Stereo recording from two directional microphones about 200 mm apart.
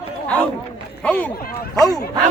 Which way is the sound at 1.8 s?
20° left (ahead or behind).